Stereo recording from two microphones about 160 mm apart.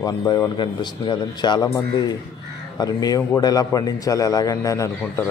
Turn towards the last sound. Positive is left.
turn(degrees=20)  # may be behind; listen again after turning